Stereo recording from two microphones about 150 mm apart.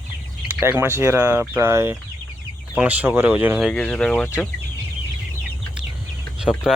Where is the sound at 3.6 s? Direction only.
Centre (ahead or behind).